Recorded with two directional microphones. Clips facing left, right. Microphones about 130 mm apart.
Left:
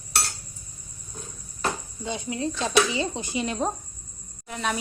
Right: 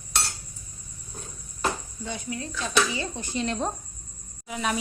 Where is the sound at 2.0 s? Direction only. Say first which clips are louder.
Left 5 dB; 25° left (ahead or behind).